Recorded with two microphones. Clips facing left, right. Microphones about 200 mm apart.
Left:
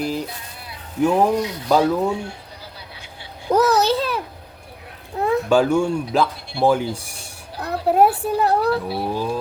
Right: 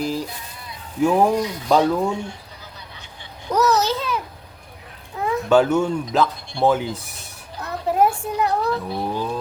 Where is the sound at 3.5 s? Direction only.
30° left (ahead or behind).